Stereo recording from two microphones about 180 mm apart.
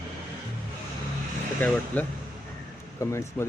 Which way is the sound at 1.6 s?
10° left (ahead or behind).